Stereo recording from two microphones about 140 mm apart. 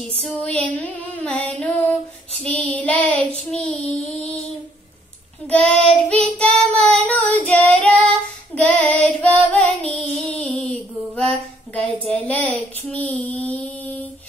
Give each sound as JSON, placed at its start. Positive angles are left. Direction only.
{"t": 0.2, "sound": "female singing", "side_deg": 5}
{"t": 0.7, "sound": "carnatic music", "side_deg": 5}
{"t": 2.4, "sound": "child singing", "side_deg": 10}
{"t": 5.5, "sound": "female singing", "side_deg": 5}
{"t": 5.9, "sound": "child singing", "side_deg": 5}
{"t": 12.4, "sound": "mantra", "side_deg": 10}